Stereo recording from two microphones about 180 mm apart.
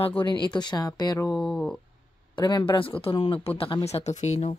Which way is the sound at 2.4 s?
25° left (ahead or behind).